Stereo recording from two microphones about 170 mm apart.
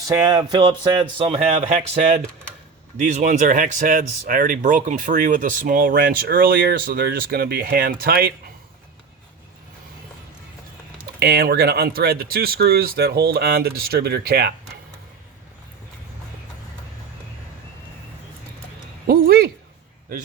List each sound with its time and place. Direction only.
0.1 s speech: 20° right (ahead or behind); by 8.2 s 65° right (ahead or behind)
11.2 s speech: 65° right (ahead or behind)
19.0 s a sound: 65° right (ahead or behind)